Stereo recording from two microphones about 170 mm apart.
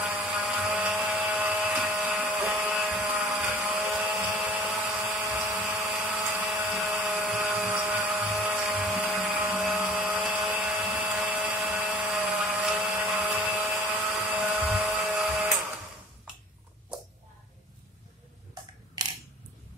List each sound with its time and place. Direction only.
0.0 s tools: 5° right (ahead or behind)
3.5 s wood: 5° right (ahead or behind)
3.9 s tools: centre (ahead or behind); by 14.4 s 15° right (ahead or behind)
14.4 s dental drill: 5° right (ahead or behind)
19.0 s camera: 25° right (ahead or behind)